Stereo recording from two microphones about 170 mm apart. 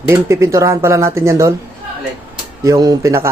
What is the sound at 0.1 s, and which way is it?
Speech, 15° right (ahead or behind).